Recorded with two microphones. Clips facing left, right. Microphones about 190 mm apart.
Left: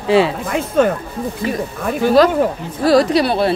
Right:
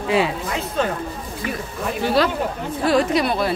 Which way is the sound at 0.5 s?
50° left (ahead or behind).